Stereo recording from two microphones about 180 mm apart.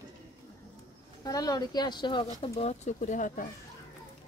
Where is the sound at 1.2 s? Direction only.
20° left (ahead or behind).